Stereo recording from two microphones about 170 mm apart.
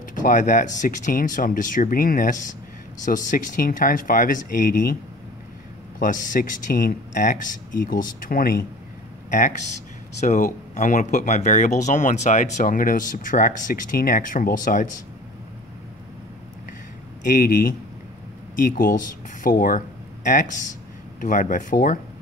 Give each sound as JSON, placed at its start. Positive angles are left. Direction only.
{"t": 0.1, "sound": "speech", "side_deg": 50}
{"t": 5.9, "sound": "speech", "side_deg": 50}
{"t": 10.2, "sound": "speech", "side_deg": 45}
{"t": 17.2, "sound": "a man's voice", "side_deg": 55}